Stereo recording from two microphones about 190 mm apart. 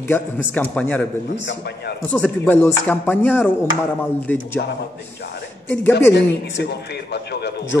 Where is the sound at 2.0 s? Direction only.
5° left (ahead or behind).